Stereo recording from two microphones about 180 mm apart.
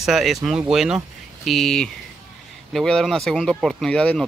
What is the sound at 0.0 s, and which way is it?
Speech, centre (ahead or behind).